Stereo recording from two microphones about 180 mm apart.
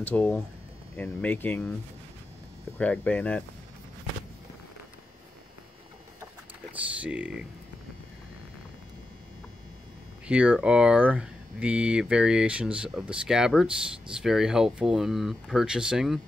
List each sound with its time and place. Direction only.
0.0 s speech: 10° left (ahead or behind)
2.8 s speech: 10° left (ahead or behind)
6.7 s speech: 5° right (ahead or behind)
10.2 s speech: 5° right (ahead or behind)